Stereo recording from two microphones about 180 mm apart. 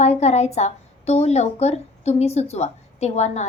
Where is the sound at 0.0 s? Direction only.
40° left (ahead or behind).